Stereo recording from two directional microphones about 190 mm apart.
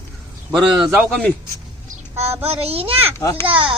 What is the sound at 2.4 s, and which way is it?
Speech, 30° right (ahead or behind).